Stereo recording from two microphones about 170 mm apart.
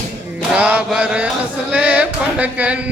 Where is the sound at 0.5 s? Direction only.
10° right (ahead or behind).